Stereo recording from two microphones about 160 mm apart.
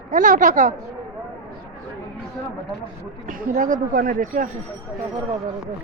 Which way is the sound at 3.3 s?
60° right (ahead or behind).